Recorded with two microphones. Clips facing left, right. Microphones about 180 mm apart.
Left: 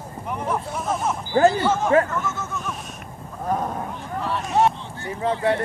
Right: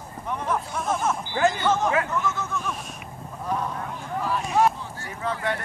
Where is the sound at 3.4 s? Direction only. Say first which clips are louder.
Left 3 dB; 45° left (ahead or behind).